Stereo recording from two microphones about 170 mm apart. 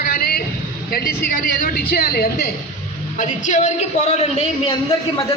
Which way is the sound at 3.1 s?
45° left (ahead or behind).